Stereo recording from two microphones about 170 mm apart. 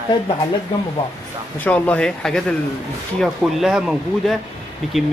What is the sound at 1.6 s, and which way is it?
Speech, 10° left (ahead or behind).